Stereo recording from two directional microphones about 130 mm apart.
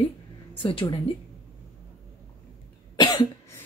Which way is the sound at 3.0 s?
30° left (ahead or behind).